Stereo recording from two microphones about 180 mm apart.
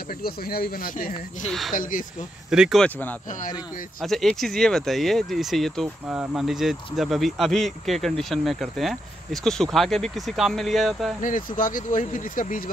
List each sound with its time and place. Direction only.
0.2 s speech: 60° left (ahead or behind)
1.5 s speech: centre (ahead or behind)
1.8 s speech: 50° left (ahead or behind)
2.5 s speech: centre (ahead or behind)
11.2 s speech: 45° left (ahead or behind)